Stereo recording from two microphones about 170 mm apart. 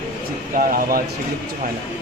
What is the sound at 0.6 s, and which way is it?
Speech, 60° right (ahead or behind).